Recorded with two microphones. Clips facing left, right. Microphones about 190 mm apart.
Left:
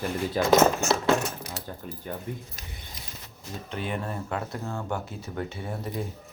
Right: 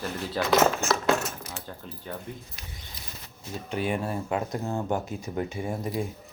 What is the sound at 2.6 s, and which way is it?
Speech, 45° left (ahead or behind).